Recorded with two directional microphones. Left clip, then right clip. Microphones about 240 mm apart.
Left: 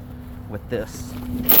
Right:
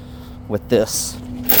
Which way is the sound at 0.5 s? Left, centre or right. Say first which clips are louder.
Right 11 dB; right.